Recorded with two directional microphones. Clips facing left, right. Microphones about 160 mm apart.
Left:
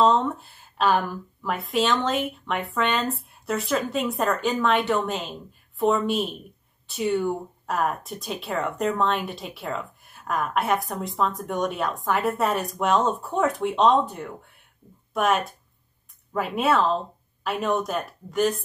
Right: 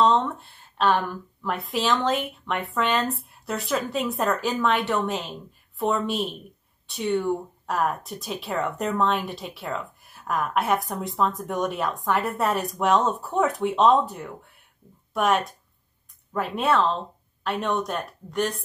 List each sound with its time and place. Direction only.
0.0 s speech: centre (ahead or behind)